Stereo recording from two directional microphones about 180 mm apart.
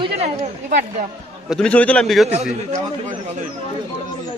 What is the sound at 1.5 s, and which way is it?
Speech, 5° left (ahead or behind).